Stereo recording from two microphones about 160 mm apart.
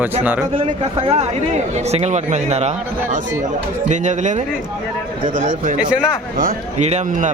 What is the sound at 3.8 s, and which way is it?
Speech, 50° right (ahead or behind).